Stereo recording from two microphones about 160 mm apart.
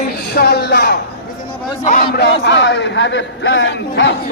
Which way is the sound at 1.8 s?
50° left (ahead or behind).